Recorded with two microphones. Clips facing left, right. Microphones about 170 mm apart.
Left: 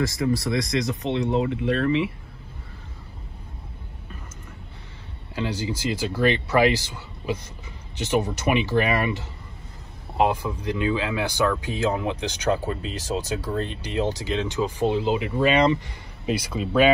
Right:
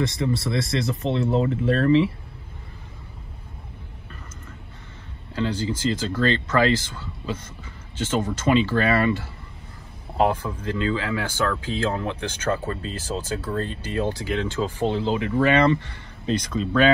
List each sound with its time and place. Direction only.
0.1 s speech: 25° right (ahead or behind)
5.3 s speech: 15° left (ahead or behind)